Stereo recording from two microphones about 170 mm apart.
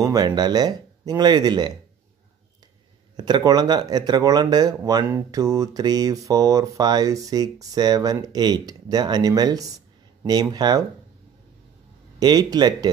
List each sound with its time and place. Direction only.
0.0 s speech: 25° right (ahead or behind)
3.2 s speech: 25° right (ahead or behind)
12.2 s speech: 25° right (ahead or behind)